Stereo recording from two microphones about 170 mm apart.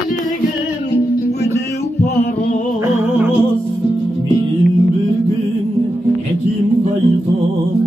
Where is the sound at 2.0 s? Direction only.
60° left (ahead or behind).